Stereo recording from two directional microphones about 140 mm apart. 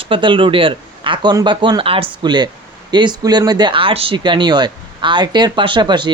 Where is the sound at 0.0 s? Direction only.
35° right (ahead or behind).